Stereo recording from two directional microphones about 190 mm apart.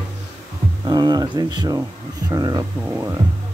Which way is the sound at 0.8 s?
20° right (ahead or behind).